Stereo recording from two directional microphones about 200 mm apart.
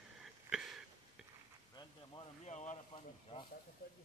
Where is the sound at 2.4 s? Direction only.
35° left (ahead or behind).